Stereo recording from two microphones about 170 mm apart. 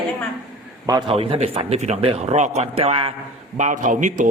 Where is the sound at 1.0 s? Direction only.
35° right (ahead or behind).